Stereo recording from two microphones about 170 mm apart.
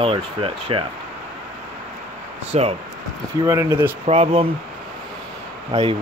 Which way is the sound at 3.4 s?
15° right (ahead or behind).